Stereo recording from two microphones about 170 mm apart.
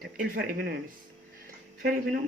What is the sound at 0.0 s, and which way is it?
Speech, 65° right (ahead or behind).